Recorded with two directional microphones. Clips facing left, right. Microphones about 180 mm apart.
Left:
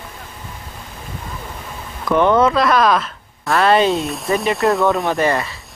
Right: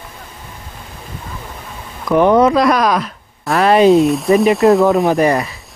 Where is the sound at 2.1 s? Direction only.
35° right (ahead or behind).